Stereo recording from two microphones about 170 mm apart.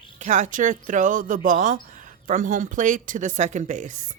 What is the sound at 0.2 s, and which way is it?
Speech, 45° right (ahead or behind).